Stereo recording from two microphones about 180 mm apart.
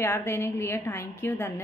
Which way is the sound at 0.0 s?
15° left (ahead or behind).